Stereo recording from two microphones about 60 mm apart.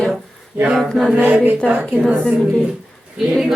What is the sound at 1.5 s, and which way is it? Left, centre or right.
Speech, right.